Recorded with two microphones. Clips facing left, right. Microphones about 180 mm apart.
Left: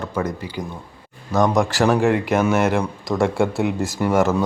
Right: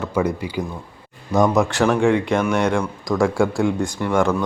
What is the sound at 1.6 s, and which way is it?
Speech, centre (ahead or behind).